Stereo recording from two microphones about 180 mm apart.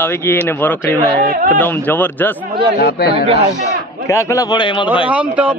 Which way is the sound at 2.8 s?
60° left (ahead or behind).